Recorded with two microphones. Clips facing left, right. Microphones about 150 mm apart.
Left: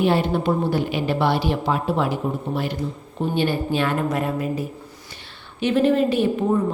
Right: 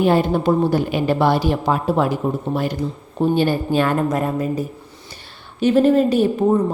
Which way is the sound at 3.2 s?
40° right (ahead or behind).